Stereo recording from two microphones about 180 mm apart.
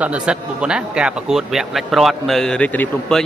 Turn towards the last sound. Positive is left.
turn(degrees=5)  # may be behind; listen again after turning